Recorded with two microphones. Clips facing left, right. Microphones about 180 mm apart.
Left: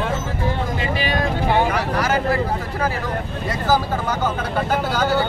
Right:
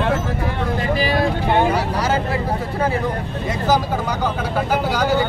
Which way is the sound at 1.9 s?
25° right (ahead or behind).